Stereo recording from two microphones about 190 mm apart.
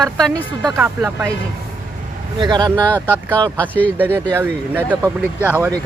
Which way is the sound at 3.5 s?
10° left (ahead or behind).